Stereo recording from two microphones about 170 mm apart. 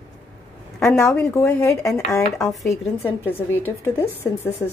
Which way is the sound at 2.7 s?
10° left (ahead or behind).